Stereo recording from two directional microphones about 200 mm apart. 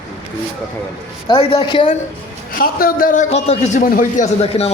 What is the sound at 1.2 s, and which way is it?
Speech, 25° left (ahead or behind).